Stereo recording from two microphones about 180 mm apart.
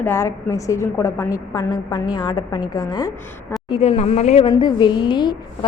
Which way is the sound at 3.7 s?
35° left (ahead or behind).